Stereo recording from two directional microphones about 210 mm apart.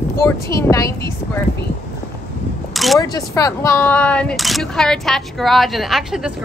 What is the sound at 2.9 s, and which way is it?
A woman's voice, 15° left (ahead or behind).